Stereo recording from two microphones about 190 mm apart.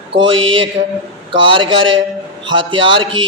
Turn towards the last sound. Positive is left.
turn(degrees=-25)  # may be behind; listen again after turning